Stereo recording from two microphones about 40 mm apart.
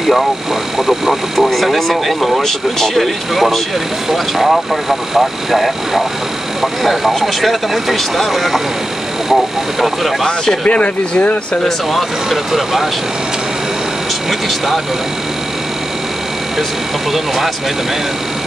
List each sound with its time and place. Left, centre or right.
0.7 s speech: centre
10.2 s speech: centre
10.6 s speech: left
12.3 s speech: centre